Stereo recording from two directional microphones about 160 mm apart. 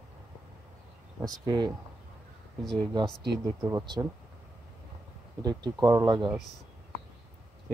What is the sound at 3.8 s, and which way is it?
Speech, 30° right (ahead or behind).